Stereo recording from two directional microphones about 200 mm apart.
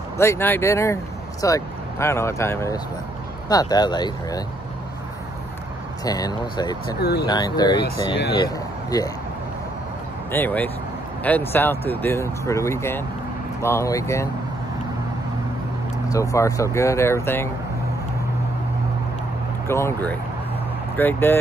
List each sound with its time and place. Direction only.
0.2 s speech: 10° left (ahead or behind)
6.0 s speech: 20° left (ahead or behind)
7.0 s speech: 50° left (ahead or behind)
7.2 s speech: 20° left (ahead or behind)
10.3 s speech: 10° left (ahead or behind)
16.1 s speech: 15° left (ahead or behind)
19.7 s speech: 15° left (ahead or behind)